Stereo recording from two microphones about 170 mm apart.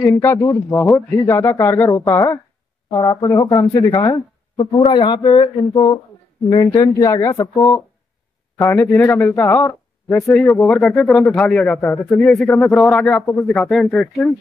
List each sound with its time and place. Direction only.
0.0 s speech: 15° left (ahead or behind)
10.3 s speech: centre (ahead or behind)
12.4 s speech: 15° left (ahead or behind)
12.8 s speech: 5° left (ahead or behind)